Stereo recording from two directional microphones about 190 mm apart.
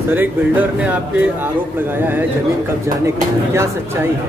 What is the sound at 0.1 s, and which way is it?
Speech, 10° right (ahead or behind).